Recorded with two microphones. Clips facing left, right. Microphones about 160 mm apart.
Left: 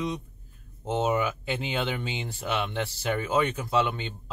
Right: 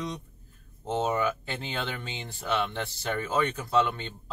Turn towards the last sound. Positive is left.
turn(degrees=5)  # may be behind; listen again after turning